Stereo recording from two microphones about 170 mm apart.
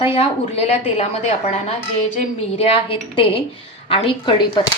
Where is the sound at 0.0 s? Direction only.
35° left (ahead or behind).